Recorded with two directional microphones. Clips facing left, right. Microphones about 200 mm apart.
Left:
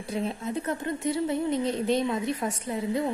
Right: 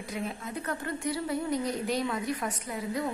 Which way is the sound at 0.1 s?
25° left (ahead or behind).